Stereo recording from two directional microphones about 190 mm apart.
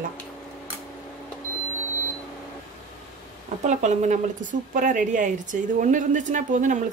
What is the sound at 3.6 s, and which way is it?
A woman's voice, 40° right (ahead or behind).